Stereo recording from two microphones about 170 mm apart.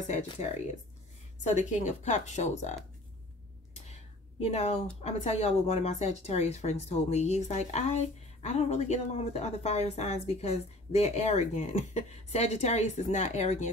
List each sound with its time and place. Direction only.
0.1 s a woman's voice: 40° left (ahead or behind)
3.7 s a woman's voice: 40° left (ahead or behind)